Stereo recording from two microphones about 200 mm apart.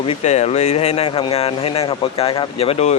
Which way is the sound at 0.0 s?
30° left (ahead or behind).